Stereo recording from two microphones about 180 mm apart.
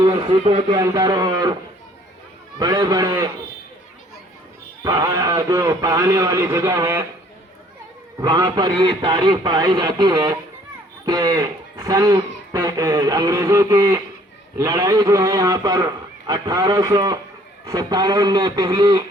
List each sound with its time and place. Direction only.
0.0 s a man's voice: 25° right (ahead or behind)
2.6 s a man's voice: 20° right (ahead or behind)
4.8 s speech: 20° right (ahead or behind)
8.2 s a man's voice: 20° right (ahead or behind)